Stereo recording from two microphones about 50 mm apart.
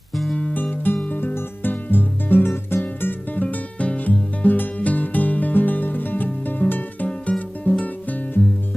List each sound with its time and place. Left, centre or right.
0.5 s music: left